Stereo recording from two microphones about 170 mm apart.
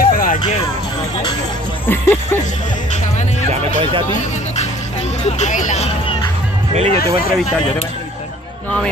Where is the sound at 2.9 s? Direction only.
45° left (ahead or behind).